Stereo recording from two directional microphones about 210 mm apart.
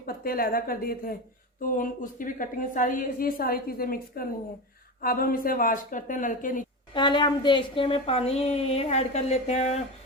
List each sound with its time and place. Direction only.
0.0 s a woman's voice: 45° left (ahead or behind)
6.9 s a woman's voice: 20° left (ahead or behind)